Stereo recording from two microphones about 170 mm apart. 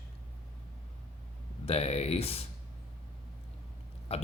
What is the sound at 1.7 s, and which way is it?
Speech, 35° left (ahead or behind).